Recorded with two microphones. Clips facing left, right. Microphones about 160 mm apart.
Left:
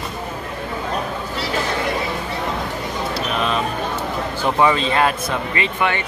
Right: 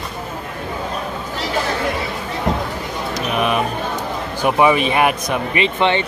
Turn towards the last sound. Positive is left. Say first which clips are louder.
# right 4 dB
turn(degrees=-25)  # may be behind; listen again after turning